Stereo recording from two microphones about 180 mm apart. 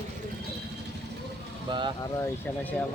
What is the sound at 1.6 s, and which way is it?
Speech, 25° right (ahead or behind).